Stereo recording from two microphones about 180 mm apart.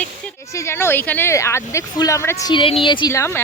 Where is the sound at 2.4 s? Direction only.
30° left (ahead or behind).